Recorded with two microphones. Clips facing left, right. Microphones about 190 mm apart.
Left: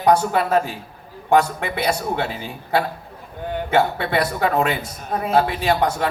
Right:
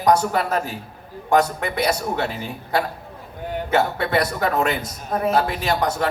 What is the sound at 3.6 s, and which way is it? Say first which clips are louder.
A man's voice: left 1 dB; 40° right (ahead or behind).